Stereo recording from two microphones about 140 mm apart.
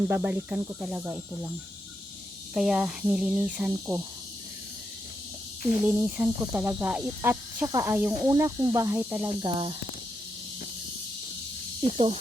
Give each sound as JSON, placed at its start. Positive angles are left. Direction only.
{"t": 0.1, "sound": "speech", "side_deg": -10}
{"t": 2.6, "sound": "speech", "side_deg": -5}
{"t": 5.8, "sound": "speech", "side_deg": -15}
{"t": 9.2, "sound": "speech", "side_deg": -35}
{"t": 11.9, "sound": "speech", "side_deg": -45}